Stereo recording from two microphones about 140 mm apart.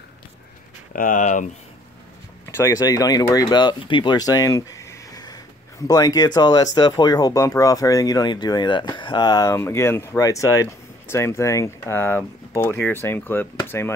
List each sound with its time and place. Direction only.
0.9 s speech: 70° left (ahead or behind)
2.4 s speech: 20° left (ahead or behind)